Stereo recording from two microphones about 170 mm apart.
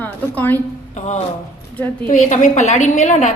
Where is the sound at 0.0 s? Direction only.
10° left (ahead or behind).